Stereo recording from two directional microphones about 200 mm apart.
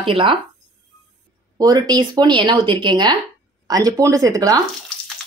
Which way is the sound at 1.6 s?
20° right (ahead or behind).